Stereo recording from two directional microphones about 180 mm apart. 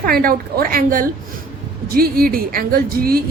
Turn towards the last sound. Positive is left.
turn(degrees=-55)  # may be behind; listen again after turning